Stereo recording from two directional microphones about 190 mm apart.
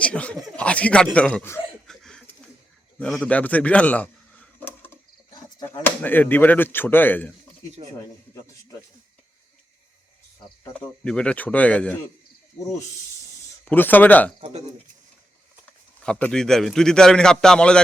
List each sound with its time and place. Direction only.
0.0 s chuckle: 5° left (ahead or behind)
0.5 s a sound: 5° left (ahead or behind)
1.1 s speech: 5° left (ahead or behind)
2.0 s a sound: 5° left (ahead or behind)
5.3 s insect: 20° left (ahead or behind)
5.8 s speech: 10° left (ahead or behind)
10.6 s speech: 5° left (ahead or behind)
13.7 s speech: 10° left (ahead or behind)
16.0 s a man's voice: 5° left (ahead or behind)